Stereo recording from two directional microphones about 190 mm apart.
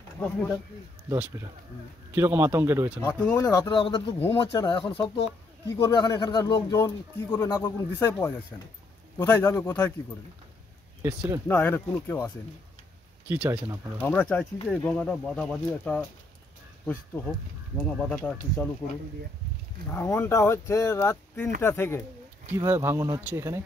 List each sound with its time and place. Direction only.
0.2 s speech: 5° left (ahead or behind)
1.0 s speech: 15° right (ahead or behind)
3.1 s speech: 5° left (ahead or behind)
3.3 s speech: 20° left (ahead or behind)
11.0 s speech: 15° right (ahead or behind)
11.4 s speech: 10° left (ahead or behind)
13.3 s speech: 5° right (ahead or behind)
14.0 s speech: 10° left (ahead or behind)
19.9 s speech: 10° left (ahead or behind)
22.5 s speech: 15° right (ahead or behind)